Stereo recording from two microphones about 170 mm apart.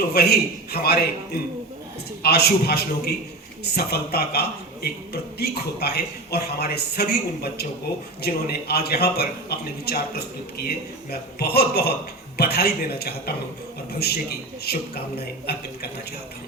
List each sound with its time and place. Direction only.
0.1 s a man's voice: 70° left (ahead or behind)
2.2 s a man's voice: 70° left (ahead or behind)
14.6 s a man's voice: 70° left (ahead or behind)